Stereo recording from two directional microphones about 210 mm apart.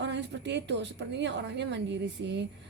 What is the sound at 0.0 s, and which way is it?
A woman's voice, 55° right (ahead or behind).